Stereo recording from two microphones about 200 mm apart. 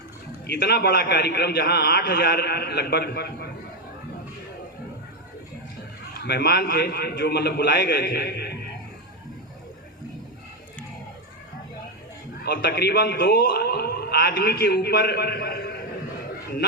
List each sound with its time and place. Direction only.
0.4 s speech: 55° left (ahead or behind)
6.1 s speech: 55° left (ahead or behind)
12.4 s speech: 55° left (ahead or behind)